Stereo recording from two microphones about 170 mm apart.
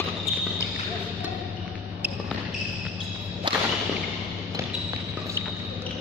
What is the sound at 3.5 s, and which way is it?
Whip, 25° right (ahead or behind).